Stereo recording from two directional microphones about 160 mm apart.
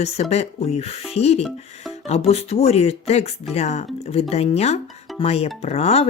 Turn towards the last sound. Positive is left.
turn(degrees=40)  # may be behind; listen again after turning